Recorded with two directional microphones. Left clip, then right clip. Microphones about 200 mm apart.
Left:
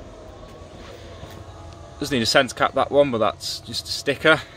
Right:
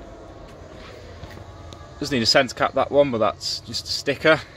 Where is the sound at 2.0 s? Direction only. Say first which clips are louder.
Even; centre (ahead or behind).